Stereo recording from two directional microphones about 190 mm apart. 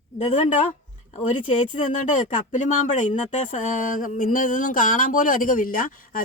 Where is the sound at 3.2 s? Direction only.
40° left (ahead or behind).